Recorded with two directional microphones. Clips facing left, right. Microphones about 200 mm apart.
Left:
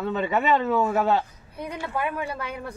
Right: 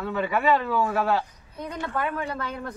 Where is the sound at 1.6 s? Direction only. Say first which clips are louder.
Even; 10° left (ahead or behind).